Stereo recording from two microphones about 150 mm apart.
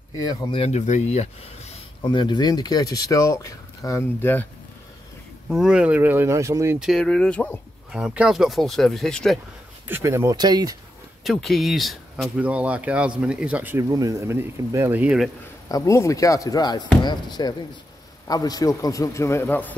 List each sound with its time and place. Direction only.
0.2 s speech: 25° left (ahead or behind)
0.6 s speech: 45° left (ahead or behind)
2.0 s speech: 30° left (ahead or behind); by 4.5 s 15° left (ahead or behind)
5.5 s speech: 5° right (ahead or behind)
6.8 s speech: centre (ahead or behind)
7.9 s speech: 5° right (ahead or behind)
9.8 s speech: 15° right (ahead or behind)
11.2 s speech: centre (ahead or behind)
13.8 s speech: 25° right (ahead or behind); by 15.3 s 5° right (ahead or behind)
15.7 s speech: 20° left (ahead or behind)